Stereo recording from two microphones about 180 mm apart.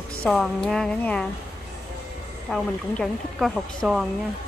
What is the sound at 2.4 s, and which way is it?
Speech, centre (ahead or behind).